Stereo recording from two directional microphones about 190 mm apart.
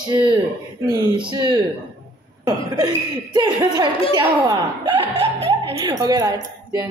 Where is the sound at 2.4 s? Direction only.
20° right (ahead or behind).